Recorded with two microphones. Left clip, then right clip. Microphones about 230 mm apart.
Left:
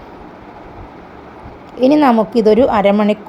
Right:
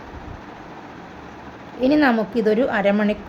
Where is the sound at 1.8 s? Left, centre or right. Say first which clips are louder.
Left 7 dB; centre.